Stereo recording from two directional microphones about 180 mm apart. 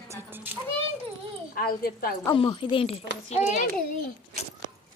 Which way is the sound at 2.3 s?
30° left (ahead or behind).